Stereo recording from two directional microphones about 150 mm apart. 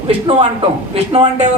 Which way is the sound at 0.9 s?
40° right (ahead or behind).